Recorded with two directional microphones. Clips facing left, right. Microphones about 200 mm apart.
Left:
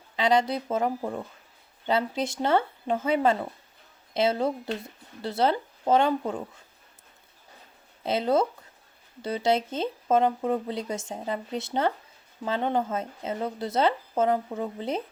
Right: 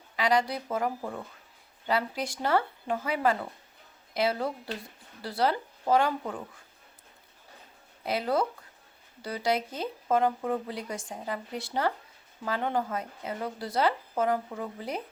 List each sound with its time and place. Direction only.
0.2 s speech: 25° left (ahead or behind)
8.0 s speech: 25° left (ahead or behind)